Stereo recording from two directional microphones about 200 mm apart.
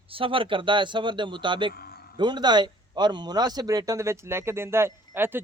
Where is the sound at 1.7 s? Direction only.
50° left (ahead or behind).